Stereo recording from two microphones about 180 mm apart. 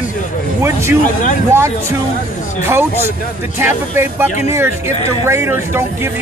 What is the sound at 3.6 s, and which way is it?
Speech, 10° right (ahead or behind).